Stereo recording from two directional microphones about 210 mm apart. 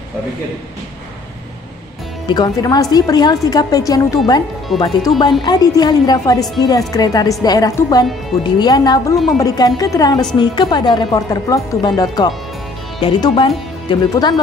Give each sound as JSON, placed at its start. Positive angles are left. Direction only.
{"t": 2.2, "sound": "a woman's voice", "side_deg": 20}